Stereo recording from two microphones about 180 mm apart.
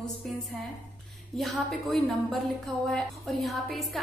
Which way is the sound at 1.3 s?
Centre (ahead or behind).